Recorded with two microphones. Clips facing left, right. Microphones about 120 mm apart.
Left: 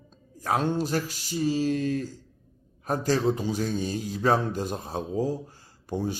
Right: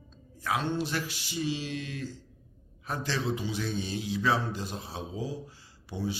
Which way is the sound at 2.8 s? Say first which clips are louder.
Left 8 dB; 45° left (ahead or behind).